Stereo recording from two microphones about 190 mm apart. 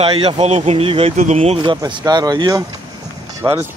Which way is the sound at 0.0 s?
30° right (ahead or behind).